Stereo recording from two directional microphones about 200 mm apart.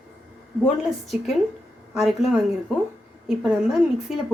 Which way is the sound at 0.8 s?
Centre (ahead or behind).